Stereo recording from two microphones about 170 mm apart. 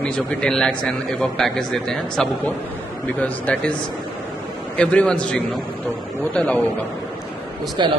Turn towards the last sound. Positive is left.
turn(degrees=-25)  # may be behind; listen again after turning